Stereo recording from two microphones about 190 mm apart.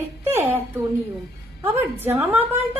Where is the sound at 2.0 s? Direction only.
10° right (ahead or behind).